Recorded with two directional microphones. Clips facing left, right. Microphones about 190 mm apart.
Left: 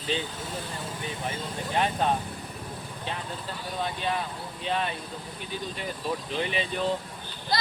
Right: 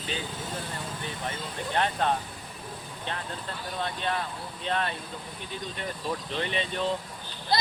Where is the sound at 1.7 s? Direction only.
10° left (ahead or behind).